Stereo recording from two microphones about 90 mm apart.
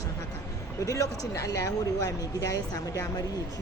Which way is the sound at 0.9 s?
35° left (ahead or behind).